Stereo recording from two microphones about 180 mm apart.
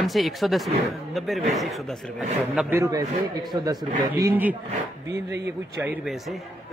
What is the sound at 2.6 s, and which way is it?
Speech, 15° right (ahead or behind).